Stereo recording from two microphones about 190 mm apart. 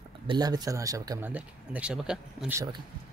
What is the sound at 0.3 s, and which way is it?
Speech, 20° right (ahead or behind).